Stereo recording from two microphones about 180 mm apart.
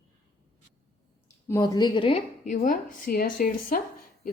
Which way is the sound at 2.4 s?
45° left (ahead or behind).